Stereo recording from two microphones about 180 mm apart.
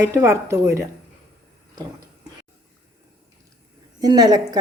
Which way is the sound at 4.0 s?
20° right (ahead or behind).